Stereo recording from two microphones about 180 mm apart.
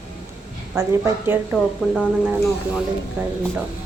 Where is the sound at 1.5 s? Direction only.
Centre (ahead or behind).